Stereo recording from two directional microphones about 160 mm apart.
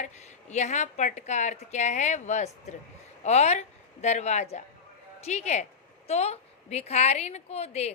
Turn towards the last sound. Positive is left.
turn(degrees=40)  # may be behind; listen again after turning